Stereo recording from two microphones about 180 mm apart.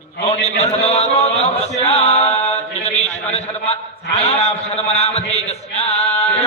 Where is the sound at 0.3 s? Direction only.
35° left (ahead or behind).